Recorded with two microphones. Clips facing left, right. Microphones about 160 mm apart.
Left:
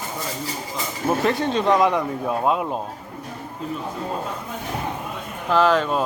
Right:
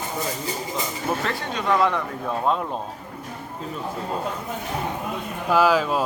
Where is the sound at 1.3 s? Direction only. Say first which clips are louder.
Left 6 dB; 25° left (ahead or behind).